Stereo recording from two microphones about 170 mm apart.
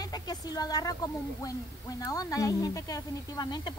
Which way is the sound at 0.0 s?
25° left (ahead or behind).